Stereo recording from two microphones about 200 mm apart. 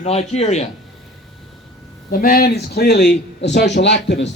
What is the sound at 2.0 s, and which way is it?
A man's voice, 45° left (ahead or behind).